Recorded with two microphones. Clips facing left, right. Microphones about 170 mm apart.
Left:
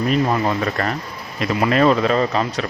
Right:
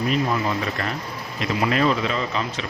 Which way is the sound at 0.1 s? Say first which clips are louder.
Left 5 dB; 45° left (ahead or behind).